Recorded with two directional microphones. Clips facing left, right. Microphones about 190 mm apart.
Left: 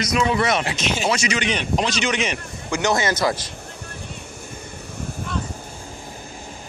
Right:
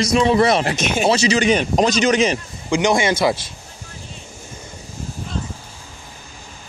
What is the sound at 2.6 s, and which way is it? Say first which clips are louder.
Speech: right 4 dB; 15° right (ahead or behind).